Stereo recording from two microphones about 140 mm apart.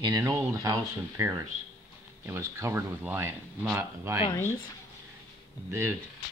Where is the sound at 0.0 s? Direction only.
25° right (ahead or behind).